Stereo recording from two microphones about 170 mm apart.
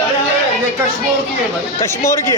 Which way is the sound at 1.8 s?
15° left (ahead or behind).